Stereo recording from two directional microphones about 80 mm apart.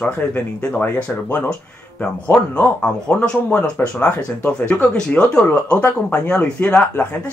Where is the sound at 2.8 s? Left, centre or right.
Centre.